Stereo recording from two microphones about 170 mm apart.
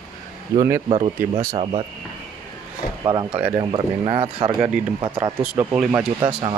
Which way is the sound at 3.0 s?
30° right (ahead or behind).